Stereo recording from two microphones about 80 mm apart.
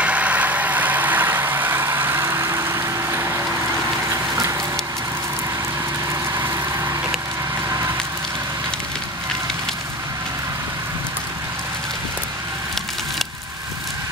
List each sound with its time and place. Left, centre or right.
0.0 s vehicle: centre; by 3.3 s right
4.1 s a sound: right
6.3 s vehicle: right